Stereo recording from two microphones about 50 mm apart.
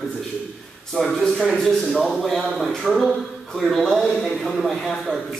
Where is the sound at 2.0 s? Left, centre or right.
Centre.